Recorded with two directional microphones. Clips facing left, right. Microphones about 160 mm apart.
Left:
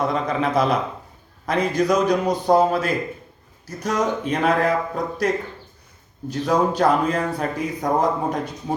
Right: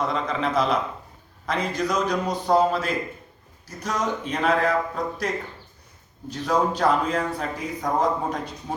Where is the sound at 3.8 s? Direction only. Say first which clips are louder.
Left 5 dB; 55° left (ahead or behind).